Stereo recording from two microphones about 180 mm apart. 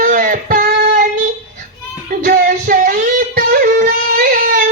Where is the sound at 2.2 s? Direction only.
50° right (ahead or behind).